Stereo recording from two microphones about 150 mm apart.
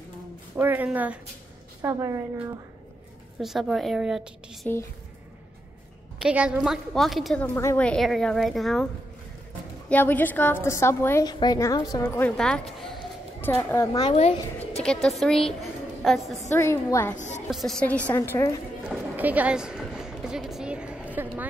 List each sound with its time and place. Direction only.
0.6 s a woman's voice: 15° right (ahead or behind)
1.8 s a woman's voice: 20° right (ahead or behind)
3.3 s a woman's voice: centre (ahead or behind)
6.1 s a woman's voice: 5° right (ahead or behind)
7.4 s a woman's voice: 15° left (ahead or behind)
9.8 s a woman's voice: 10° left (ahead or behind)
11.2 s a woman's voice: 25° left (ahead or behind)
12.2 s a woman's voice: 10° left (ahead or behind)
13.4 s a woman's voice: 15° left (ahead or behind)
14.0 s speech: 45° left (ahead or behind)
14.8 s a woman's voice: 5° left (ahead or behind)
16.5 s a woman's voice: 20° left (ahead or behind)
17.5 s a woman's voice: centre (ahead or behind); by 18.6 s 15° left (ahead or behind)
18.9 s a sound: 10° right (ahead or behind)